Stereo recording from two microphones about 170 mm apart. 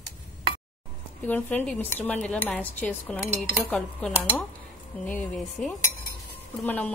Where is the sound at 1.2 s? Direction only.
10° left (ahead or behind).